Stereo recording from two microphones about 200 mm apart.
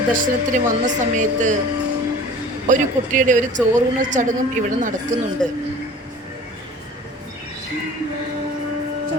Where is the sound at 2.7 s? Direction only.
40° right (ahead or behind).